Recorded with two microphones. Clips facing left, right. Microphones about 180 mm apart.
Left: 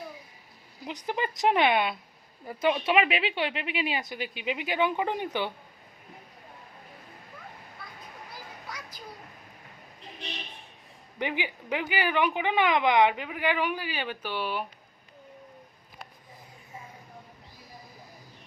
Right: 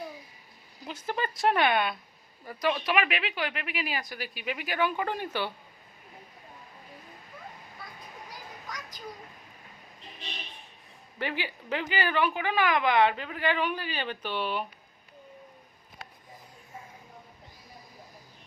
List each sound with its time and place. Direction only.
0.9 s speech: 15° left (ahead or behind)
8.6 s children playing: 10° left (ahead or behind)
11.2 s a woman's voice: 15° left (ahead or behind)